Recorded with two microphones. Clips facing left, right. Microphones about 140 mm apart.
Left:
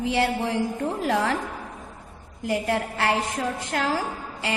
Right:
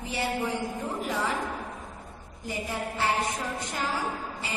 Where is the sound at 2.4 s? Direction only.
75° left (ahead or behind).